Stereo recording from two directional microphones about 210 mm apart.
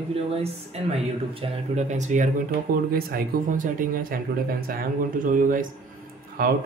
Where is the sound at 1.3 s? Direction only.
30° right (ahead or behind).